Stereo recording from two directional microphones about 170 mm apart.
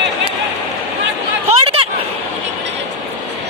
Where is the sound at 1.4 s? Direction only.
35° right (ahead or behind).